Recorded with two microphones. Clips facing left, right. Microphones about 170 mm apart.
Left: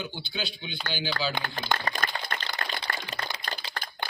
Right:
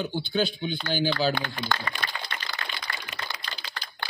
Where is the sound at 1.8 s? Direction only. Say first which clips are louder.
Left 2 dB; 40° left (ahead or behind).